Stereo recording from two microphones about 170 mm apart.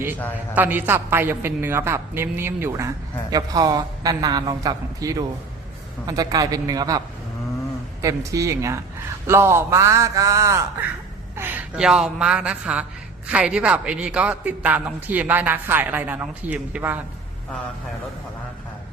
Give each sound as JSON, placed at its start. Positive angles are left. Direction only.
{"t": 0.5, "sound": "a woman's voice", "side_deg": -10}
{"t": 8.0, "sound": "a woman's voice", "side_deg": -20}